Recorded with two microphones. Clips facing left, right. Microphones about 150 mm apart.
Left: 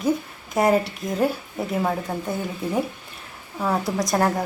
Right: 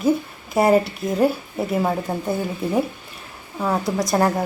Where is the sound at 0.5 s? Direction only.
10° right (ahead or behind).